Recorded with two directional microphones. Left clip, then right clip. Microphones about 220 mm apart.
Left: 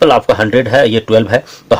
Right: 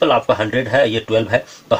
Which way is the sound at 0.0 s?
50° left (ahead or behind).